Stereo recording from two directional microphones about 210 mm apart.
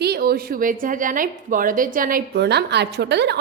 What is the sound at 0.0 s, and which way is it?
A woman's voice, 45° right (ahead or behind).